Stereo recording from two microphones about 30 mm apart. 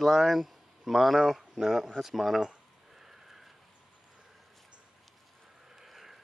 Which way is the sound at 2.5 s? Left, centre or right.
Centre.